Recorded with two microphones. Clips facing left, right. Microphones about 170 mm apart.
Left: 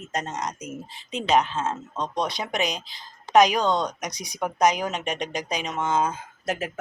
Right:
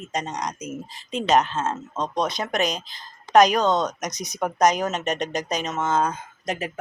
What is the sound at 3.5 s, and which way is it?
Speech, 10° left (ahead or behind).